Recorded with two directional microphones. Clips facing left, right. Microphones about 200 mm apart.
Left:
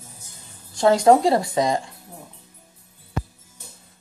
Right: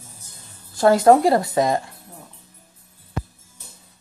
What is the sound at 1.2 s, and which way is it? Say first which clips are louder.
Speech: right 2 dB; 25° left (ahead or behind).